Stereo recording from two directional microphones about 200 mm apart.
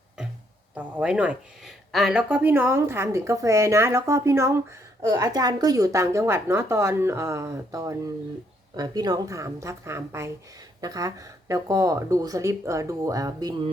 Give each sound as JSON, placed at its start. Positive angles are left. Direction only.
{"t": 0.7, "sound": "speech", "side_deg": -5}